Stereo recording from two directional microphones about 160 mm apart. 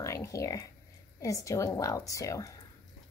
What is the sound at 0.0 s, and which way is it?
A woman's voice, 20° left (ahead or behind).